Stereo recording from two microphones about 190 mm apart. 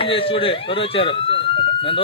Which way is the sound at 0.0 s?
30° left (ahead or behind).